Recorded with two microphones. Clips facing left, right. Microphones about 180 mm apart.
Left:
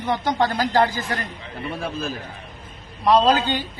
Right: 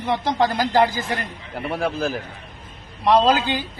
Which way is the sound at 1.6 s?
80° right.